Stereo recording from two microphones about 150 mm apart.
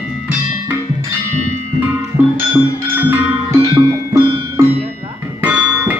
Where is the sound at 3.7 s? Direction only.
25° right (ahead or behind).